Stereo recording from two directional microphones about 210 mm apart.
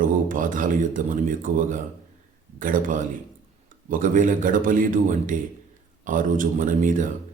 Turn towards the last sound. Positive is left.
turn(degrees=-40)  # may be behind; listen again after turning